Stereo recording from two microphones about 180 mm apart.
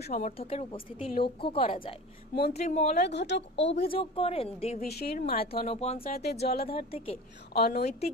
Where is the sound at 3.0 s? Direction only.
70° left (ahead or behind).